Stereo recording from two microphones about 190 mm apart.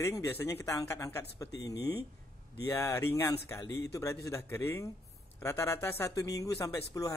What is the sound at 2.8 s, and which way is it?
Speech, 15° left (ahead or behind).